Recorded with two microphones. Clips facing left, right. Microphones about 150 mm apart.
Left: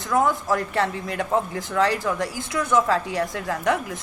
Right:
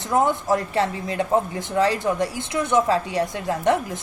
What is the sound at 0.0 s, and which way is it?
A woman's voice, 25° right (ahead or behind).